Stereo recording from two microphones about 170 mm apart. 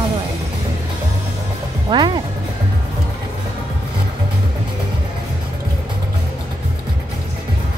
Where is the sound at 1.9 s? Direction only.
25° right (ahead or behind).